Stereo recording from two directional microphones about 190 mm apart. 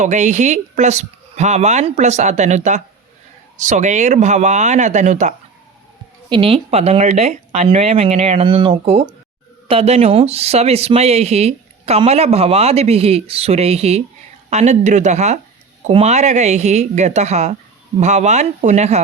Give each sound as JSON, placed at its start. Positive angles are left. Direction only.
{"t": 0.0, "sound": "speech", "side_deg": -40}
{"t": 6.3, "sound": "speech", "side_deg": -30}